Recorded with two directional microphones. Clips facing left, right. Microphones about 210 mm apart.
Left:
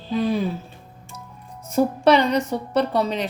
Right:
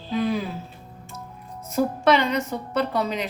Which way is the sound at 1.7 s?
35° left (ahead or behind).